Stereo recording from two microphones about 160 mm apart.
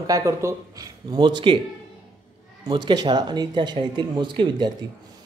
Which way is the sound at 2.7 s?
25° right (ahead or behind).